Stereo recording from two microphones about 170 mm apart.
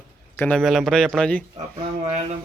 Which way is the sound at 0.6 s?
Centre (ahead or behind).